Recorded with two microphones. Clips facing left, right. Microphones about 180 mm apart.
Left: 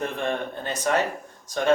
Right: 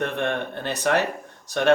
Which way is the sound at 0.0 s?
65° right (ahead or behind).